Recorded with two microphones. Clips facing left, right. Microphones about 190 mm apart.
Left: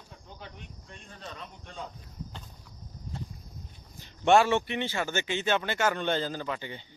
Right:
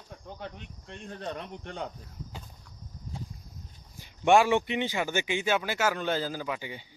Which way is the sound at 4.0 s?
10° right (ahead or behind).